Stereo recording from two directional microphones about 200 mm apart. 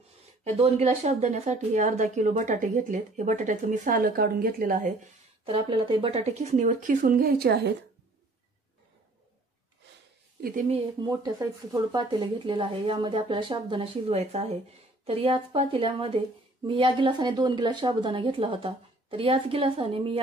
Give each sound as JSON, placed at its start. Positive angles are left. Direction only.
{"t": 0.4, "sound": "a woman's voice", "side_deg": -30}
{"t": 5.4, "sound": "a woman's voice", "side_deg": -25}
{"t": 10.4, "sound": "a woman's voice", "side_deg": -40}
{"t": 11.1, "sound": "a woman's voice", "side_deg": -20}